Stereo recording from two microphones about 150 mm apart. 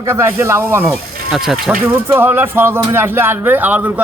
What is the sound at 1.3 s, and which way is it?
Speech, centre (ahead or behind).